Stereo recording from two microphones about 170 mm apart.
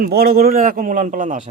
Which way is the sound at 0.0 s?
65° right (ahead or behind).